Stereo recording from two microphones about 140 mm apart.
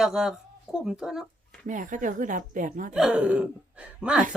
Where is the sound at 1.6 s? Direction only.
65° right (ahead or behind).